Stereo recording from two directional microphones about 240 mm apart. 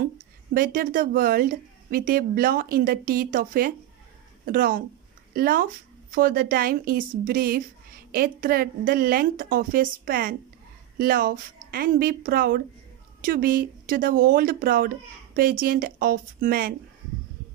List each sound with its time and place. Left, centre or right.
0.6 s speech: right